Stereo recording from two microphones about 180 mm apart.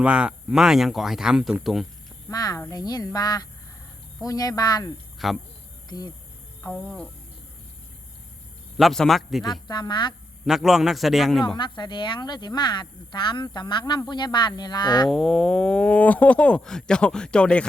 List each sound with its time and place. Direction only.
0.0 s speech: 5° right (ahead or behind)
2.3 s speech: 20° left (ahead or behind)
5.2 s speech: centre (ahead or behind)
5.9 s speech: 25° left (ahead or behind)
6.6 s speech: 10° left (ahead or behind)
8.8 s speech: centre (ahead or behind)
9.4 s speech: 25° left (ahead or behind)
10.4 s speech: centre (ahead or behind)
11.4 s speech: 25° left (ahead or behind)
15.0 s speech: centre (ahead or behind)